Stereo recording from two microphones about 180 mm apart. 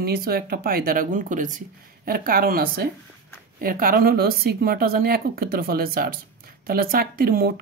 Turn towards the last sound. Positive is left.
turn(degrees=-55)  # may be behind; listen again after turning